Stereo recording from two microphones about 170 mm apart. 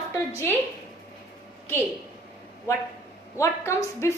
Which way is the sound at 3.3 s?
15° left (ahead or behind).